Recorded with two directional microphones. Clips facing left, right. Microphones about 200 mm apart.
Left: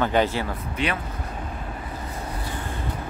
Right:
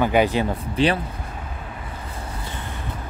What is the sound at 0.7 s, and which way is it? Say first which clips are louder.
Speech: right 7 dB; 30° right (ahead or behind).